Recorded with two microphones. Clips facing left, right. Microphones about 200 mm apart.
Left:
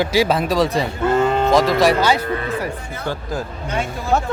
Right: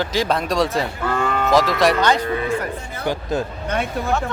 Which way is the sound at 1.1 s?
25° left (ahead or behind).